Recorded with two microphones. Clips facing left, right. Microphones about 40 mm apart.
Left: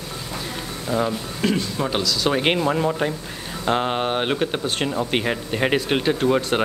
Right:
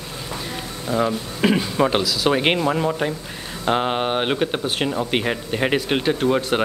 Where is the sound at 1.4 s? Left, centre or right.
Centre.